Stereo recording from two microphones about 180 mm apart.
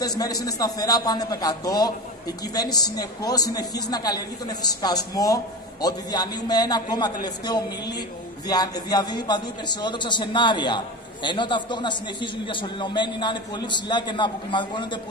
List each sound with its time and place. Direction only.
0.2 s a man's voice: 20° left (ahead or behind)